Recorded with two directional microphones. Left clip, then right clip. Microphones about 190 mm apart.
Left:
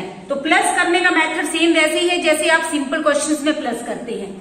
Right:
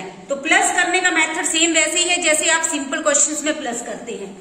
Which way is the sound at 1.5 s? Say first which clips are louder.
Left 3 dB; 40° right (ahead or behind).